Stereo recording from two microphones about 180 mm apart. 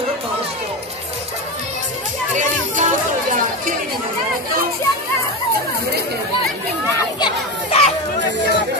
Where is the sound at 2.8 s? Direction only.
45° right (ahead or behind).